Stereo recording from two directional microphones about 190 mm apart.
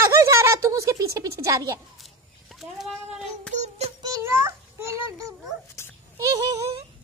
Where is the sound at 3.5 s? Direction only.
40° right (ahead or behind).